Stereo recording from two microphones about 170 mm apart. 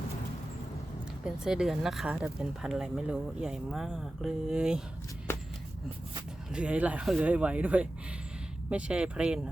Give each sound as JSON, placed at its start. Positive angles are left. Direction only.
{"t": 1.2, "sound": "speech", "side_deg": -5}
{"t": 5.3, "sound": "a sound", "side_deg": 15}
{"t": 6.5, "sound": "speech", "side_deg": -5}